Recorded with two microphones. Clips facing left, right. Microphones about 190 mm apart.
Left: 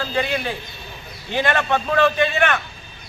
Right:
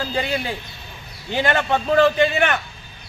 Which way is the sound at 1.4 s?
30° right (ahead or behind).